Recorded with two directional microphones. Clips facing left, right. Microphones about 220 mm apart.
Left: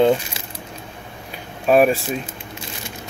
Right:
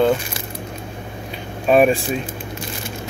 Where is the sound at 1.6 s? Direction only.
5° left (ahead or behind).